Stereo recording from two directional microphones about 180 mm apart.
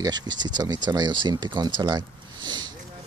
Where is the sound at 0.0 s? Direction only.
25° right (ahead or behind).